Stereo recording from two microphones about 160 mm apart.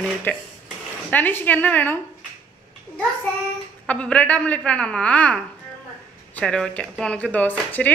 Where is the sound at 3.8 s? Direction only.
5° left (ahead or behind).